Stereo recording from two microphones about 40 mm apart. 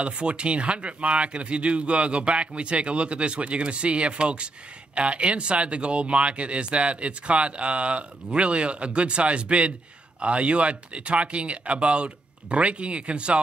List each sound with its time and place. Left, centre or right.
0.0 s speech: right